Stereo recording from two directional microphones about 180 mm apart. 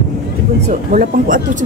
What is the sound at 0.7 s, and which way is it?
Speech, 45° right (ahead or behind).